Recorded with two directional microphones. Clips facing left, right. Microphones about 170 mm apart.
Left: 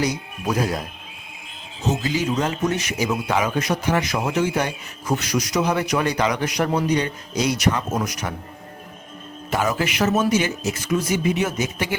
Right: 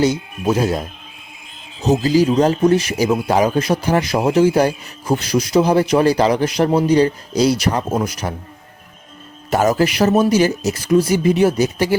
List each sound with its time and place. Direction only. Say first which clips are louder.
0.0 s speech: right 7 dB; 25° right (ahead or behind)
9.5 s speech: right 7 dB; 40° right (ahead or behind)